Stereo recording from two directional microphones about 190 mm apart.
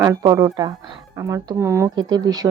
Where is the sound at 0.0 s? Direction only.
20° right (ahead or behind).